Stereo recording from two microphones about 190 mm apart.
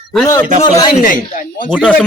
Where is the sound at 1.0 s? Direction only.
45° left (ahead or behind).